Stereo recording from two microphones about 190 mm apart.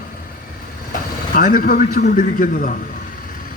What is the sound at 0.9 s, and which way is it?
Speech, 45° left (ahead or behind).